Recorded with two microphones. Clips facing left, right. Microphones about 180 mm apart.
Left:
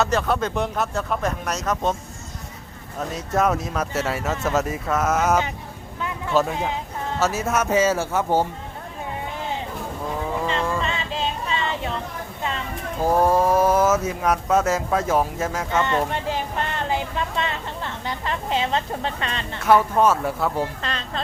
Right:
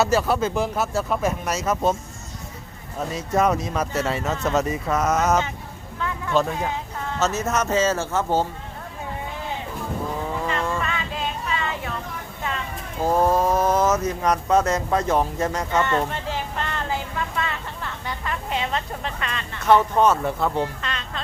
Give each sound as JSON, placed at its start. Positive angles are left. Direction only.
{"t": 0.0, "sound": "speech", "side_deg": -5}
{"t": 3.0, "sound": "speech", "side_deg": 0}
{"t": 10.4, "sound": "vehicle", "side_deg": 25}
{"t": 13.0, "sound": "speech", "side_deg": 10}
{"t": 16.9, "sound": "vehicle", "side_deg": 20}
{"t": 18.0, "sound": "a sound", "side_deg": 30}
{"t": 19.6, "sound": "speech", "side_deg": 5}
{"t": 20.8, "sound": "a sound", "side_deg": 35}